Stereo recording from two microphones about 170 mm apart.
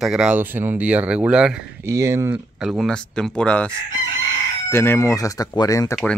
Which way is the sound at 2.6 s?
Centre (ahead or behind).